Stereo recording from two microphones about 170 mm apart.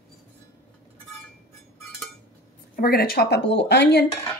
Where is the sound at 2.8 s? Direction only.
65° left (ahead or behind); by 4.1 s 80° left.